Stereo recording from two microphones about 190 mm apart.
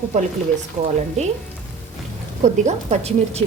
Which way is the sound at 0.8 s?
35° right (ahead or behind).